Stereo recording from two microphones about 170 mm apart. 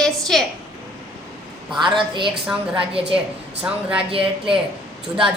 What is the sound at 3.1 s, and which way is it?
Speech, 5° right (ahead or behind).